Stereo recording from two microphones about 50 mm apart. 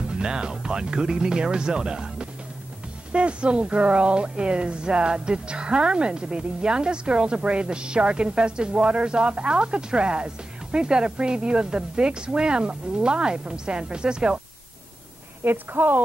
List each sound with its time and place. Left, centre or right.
0.1 s speech: centre
15.4 s a woman's voice: right